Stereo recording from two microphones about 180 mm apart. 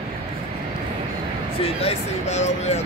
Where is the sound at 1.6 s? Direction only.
35° left (ahead or behind).